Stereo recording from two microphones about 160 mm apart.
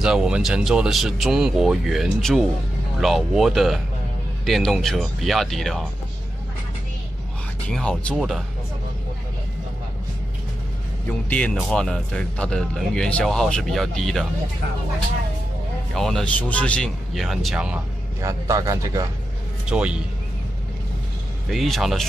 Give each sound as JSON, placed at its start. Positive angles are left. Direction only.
{"t": 0.0, "sound": "speech", "side_deg": -5}
{"t": 7.6, "sound": "speech", "side_deg": 5}
{"t": 11.1, "sound": "speech", "side_deg": 10}
{"t": 15.9, "sound": "speech", "side_deg": 0}
{"t": 18.2, "sound": "a man's voice", "side_deg": -20}
{"t": 19.7, "sound": "speech", "side_deg": -5}
{"t": 21.5, "sound": "speech", "side_deg": 0}